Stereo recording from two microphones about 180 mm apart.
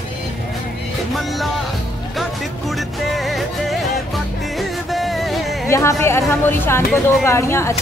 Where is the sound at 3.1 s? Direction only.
Centre (ahead or behind).